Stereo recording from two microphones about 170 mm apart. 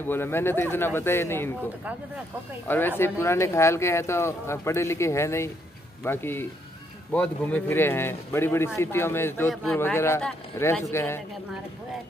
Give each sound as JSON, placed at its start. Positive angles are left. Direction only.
{"t": 0.0, "sound": "speech", "side_deg": 15}
{"t": 3.0, "sound": "speech", "side_deg": 15}